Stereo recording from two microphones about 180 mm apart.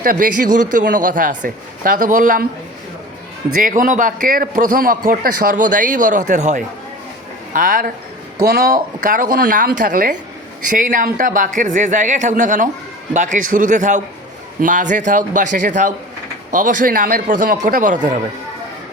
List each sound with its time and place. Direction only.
0.0 s a man's voice: 50° right (ahead or behind)
3.6 s a man's voice: 50° right (ahead or behind)